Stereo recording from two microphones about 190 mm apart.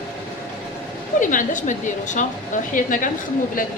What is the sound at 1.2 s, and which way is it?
A woman's voice, 45° left (ahead or behind).